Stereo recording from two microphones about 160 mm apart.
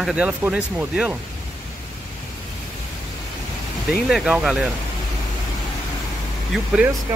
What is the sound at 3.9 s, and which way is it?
Speech, centre (ahead or behind).